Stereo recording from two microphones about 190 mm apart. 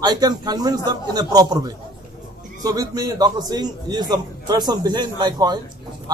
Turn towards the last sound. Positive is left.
turn(degrees=-20)  # may be behind; listen again after turning